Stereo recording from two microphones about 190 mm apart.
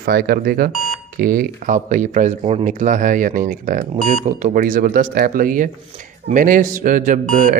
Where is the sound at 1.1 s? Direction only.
50° right (ahead or behind).